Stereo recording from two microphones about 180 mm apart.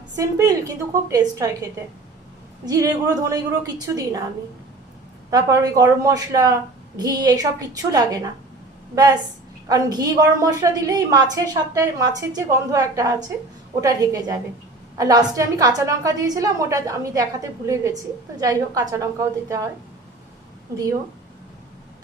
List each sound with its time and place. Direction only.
0.2 s a woman's voice: 20° right (ahead or behind)
5.3 s a woman's voice: 20° right (ahead or behind)
9.6 s a woman's voice: 20° right (ahead or behind)